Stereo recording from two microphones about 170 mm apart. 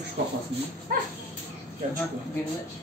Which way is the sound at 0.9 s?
55° right (ahead or behind).